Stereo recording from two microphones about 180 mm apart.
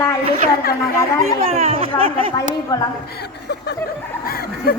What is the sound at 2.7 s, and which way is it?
Speech, 25° left (ahead or behind).